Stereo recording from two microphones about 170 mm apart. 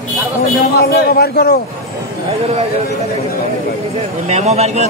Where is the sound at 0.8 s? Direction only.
65° left (ahead or behind).